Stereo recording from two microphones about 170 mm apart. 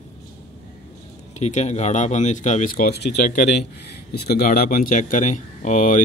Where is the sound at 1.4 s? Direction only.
40° left (ahead or behind).